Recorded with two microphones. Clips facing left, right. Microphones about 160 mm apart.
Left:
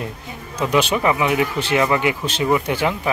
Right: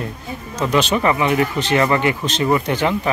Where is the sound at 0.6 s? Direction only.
10° left (ahead or behind).